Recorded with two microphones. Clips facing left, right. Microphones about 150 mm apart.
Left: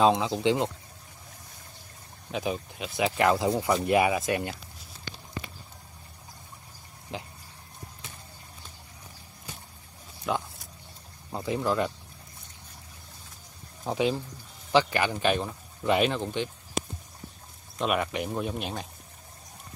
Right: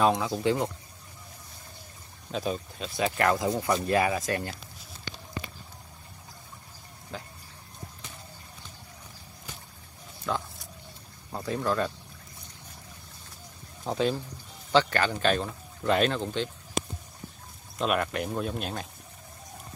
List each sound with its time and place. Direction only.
0.0 s speech: 20° left (ahead or behind)
2.3 s speech: 15° left (ahead or behind)
10.3 s speech: 15° left (ahead or behind)
13.8 s speech: 10° left (ahead or behind)
17.7 s speech: 5° left (ahead or behind)